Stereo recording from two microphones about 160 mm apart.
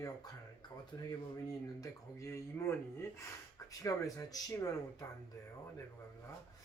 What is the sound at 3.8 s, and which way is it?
Speech, 20° left (ahead or behind).